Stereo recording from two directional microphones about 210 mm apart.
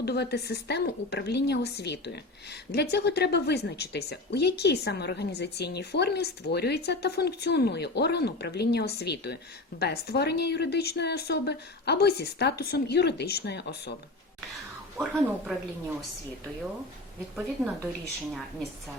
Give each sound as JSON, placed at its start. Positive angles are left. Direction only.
{"t": 0.0, "sound": "a woman's voice", "side_deg": 50}
{"t": 14.9, "sound": "a woman's voice", "side_deg": -5}